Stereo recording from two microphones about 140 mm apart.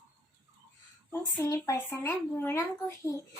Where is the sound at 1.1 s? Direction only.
15° left (ahead or behind).